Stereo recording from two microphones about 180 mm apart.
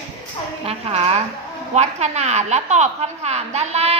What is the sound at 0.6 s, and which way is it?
A woman's voice, 35° right (ahead or behind).